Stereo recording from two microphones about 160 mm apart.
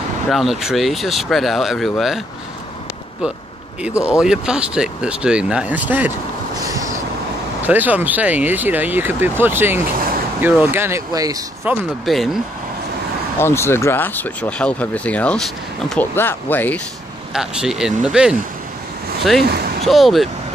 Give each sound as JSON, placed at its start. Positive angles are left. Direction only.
{"t": 0.3, "sound": "speech", "side_deg": 0}
{"t": 3.9, "sound": "speech", "side_deg": 15}
{"t": 4.2, "sound": "speech", "side_deg": -5}
{"t": 6.6, "sound": "vehicle", "side_deg": -20}
{"t": 7.6, "sound": "speech", "side_deg": -10}
{"t": 12.1, "sound": "speech", "side_deg": 0}
{"t": 13.4, "sound": "speech", "side_deg": 15}
{"t": 17.3, "sound": "speech", "side_deg": -5}
{"t": 19.4, "sound": "speech", "side_deg": -75}
{"t": 19.9, "sound": "speech", "side_deg": 0}